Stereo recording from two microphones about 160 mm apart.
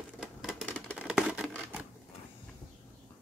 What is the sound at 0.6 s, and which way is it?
Scissors, 10° left (ahead or behind).